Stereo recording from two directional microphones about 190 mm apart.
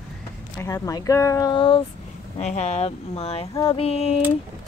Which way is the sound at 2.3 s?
35° left (ahead or behind).